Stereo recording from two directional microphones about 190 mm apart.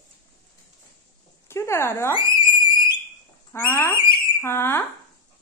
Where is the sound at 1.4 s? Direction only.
15° left (ahead or behind).